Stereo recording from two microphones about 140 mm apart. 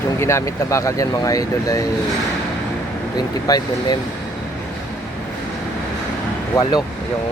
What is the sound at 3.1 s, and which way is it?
Speech, 30° left (ahead or behind).